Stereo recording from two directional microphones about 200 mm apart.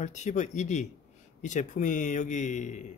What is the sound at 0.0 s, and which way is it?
Speech, 35° left (ahead or behind).